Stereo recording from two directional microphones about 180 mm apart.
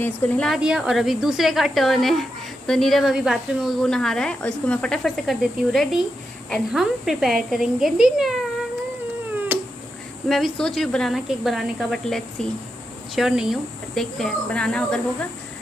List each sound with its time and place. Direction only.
0.0 s a woman's voice: 5° left (ahead or behind)
10.2 s a woman's voice: centre (ahead or behind)